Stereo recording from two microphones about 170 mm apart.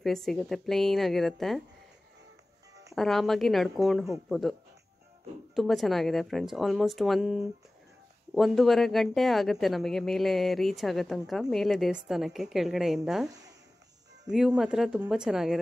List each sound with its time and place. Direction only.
0.0 s speech: centre (ahead or behind)
2.9 s speech: centre (ahead or behind)
13.3 s a sound: 20° right (ahead or behind)
14.3 s speech: 5° right (ahead or behind)